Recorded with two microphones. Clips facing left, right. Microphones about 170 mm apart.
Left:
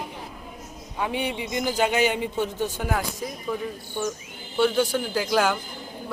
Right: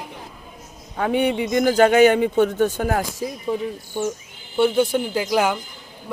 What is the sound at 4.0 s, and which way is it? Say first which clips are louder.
A man's voice: right 4 dB; 15° right (ahead or behind).